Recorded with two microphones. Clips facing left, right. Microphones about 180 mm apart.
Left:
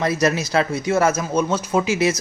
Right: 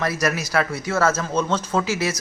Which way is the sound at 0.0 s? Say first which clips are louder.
Left 4 dB; 20° left (ahead or behind).